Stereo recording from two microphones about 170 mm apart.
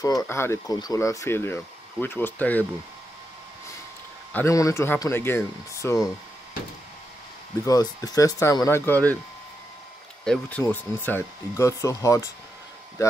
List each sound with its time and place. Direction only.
0.0 s speech: 20° left (ahead or behind)
4.3 s speech: 15° left (ahead or behind)
7.6 s speech: 20° left (ahead or behind)
10.2 s speech: 5° left (ahead or behind)